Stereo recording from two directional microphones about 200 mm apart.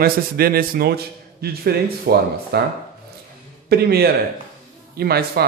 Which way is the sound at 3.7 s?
50° right (ahead or behind).